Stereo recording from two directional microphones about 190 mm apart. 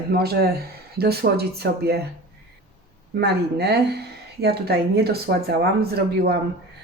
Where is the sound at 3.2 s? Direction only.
60° right (ahead or behind).